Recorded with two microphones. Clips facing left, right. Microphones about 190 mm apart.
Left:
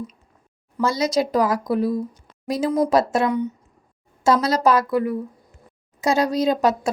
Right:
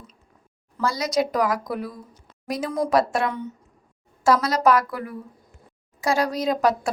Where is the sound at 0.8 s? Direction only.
25° left (ahead or behind).